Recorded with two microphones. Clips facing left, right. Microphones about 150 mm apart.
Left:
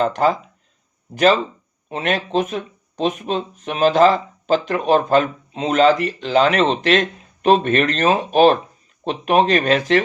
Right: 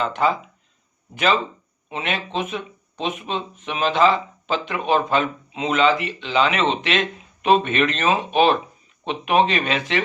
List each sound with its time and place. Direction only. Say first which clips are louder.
0.0 s speech: left 4 dB; 40° left (ahead or behind)